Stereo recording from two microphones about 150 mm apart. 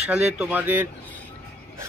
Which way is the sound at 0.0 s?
5° right (ahead or behind).